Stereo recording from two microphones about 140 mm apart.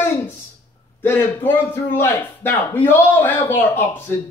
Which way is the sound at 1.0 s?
15° left (ahead or behind).